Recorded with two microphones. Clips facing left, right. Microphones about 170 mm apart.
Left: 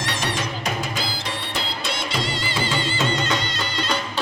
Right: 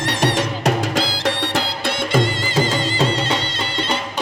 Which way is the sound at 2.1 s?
45° right (ahead or behind).